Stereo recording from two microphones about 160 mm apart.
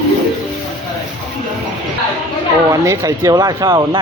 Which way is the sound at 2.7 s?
20° right (ahead or behind).